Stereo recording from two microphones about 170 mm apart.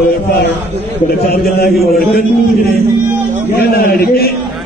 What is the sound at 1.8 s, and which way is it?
Speech, 65° left (ahead or behind).